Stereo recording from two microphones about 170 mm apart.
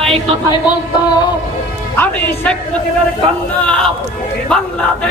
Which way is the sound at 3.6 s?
5° left (ahead or behind).